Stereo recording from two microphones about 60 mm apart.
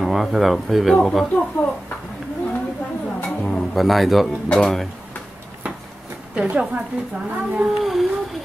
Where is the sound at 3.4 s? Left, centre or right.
Centre.